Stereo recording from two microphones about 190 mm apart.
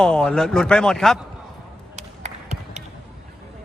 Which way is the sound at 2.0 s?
35° right (ahead or behind).